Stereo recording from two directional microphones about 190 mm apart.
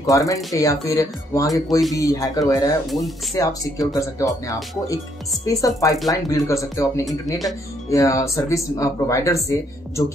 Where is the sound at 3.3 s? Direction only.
20° left (ahead or behind).